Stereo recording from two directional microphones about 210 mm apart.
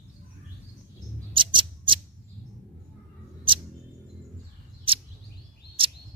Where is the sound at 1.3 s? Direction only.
25° right (ahead or behind).